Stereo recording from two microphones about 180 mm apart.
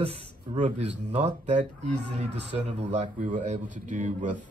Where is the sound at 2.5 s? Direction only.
35° right (ahead or behind).